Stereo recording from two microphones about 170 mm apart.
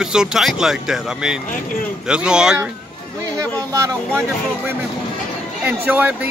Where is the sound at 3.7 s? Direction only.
15° right (ahead or behind).